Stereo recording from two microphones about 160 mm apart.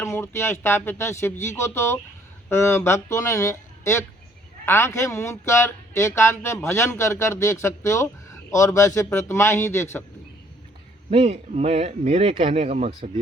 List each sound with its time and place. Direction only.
0.0 s speech: 15° left (ahead or behind)
11.1 s speech: 40° right (ahead or behind)